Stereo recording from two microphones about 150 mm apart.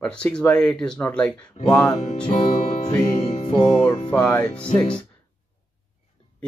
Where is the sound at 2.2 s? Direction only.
35° left (ahead or behind).